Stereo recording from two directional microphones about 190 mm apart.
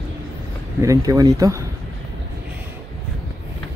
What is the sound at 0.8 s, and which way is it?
Speech, 15° right (ahead or behind).